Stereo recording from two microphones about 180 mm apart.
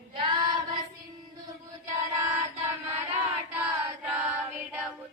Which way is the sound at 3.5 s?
10° right (ahead or behind).